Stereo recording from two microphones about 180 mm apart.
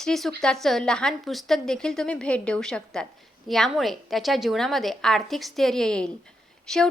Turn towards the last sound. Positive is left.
turn(degrees=5)  # may be behind; listen again after turning